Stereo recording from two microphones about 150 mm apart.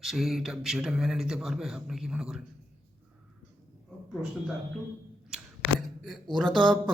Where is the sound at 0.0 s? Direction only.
Centre (ahead or behind).